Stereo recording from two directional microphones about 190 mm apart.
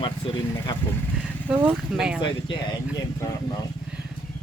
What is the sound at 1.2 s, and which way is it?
Speech, 5° right (ahead or behind).